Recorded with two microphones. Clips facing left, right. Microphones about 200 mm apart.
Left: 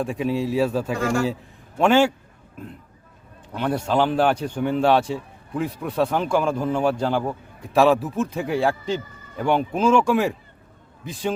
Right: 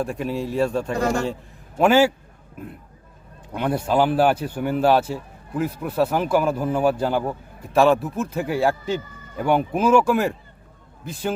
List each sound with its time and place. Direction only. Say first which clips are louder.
0.0 s a man's voice: left 2 dB; centre (ahead or behind)
0.9 s a man's voice: right 2 dB; 40° right (ahead or behind)
1.8 s a man's voice: right 1 dB; 5° right (ahead or behind)
3.5 s a man's voice: right 1 dB; 10° right (ahead or behind)